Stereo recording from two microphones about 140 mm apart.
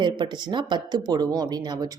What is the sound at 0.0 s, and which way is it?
A woman's voice, 35° right (ahead or behind).